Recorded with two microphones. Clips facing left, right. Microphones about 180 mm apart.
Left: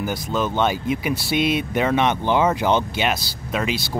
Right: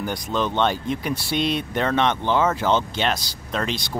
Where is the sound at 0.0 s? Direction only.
5° left (ahead or behind).